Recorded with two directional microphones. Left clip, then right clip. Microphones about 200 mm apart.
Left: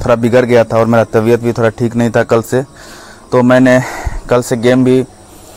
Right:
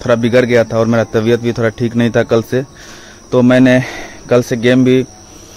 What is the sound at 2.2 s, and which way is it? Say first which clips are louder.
Speech: left 2 dB; 20° right (ahead or behind).